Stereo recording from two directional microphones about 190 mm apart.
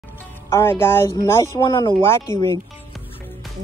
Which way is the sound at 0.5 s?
15° left (ahead or behind).